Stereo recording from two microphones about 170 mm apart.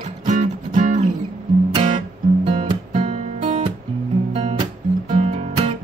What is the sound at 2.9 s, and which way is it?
Music, 40° right (ahead or behind).